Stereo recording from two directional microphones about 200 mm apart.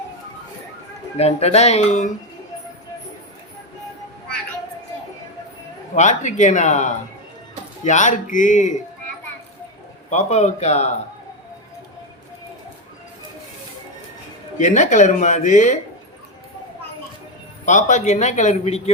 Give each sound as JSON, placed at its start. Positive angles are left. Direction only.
{"t": 1.1, "sound": "speech", "side_deg": 30}
{"t": 6.0, "sound": "speech", "side_deg": 35}
{"t": 10.1, "sound": "speech", "side_deg": 35}
{"t": 14.6, "sound": "speech", "side_deg": 35}
{"t": 17.7, "sound": "speech", "side_deg": 40}